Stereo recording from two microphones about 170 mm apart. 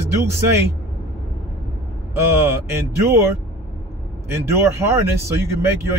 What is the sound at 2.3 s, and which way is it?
Speech, 15° right (ahead or behind).